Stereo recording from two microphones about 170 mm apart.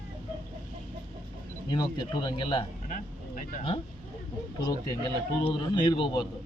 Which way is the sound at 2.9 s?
55° left (ahead or behind).